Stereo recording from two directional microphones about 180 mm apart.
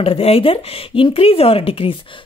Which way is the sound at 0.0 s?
35° left (ahead or behind).